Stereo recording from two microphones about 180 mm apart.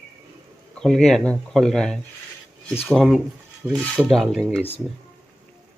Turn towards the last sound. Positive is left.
turn(degrees=5)  # may be behind; listen again after turning